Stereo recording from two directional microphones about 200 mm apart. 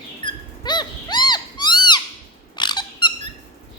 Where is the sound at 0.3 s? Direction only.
20° left (ahead or behind).